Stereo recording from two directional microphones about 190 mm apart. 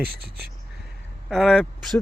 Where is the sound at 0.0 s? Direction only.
55° right (ahead or behind).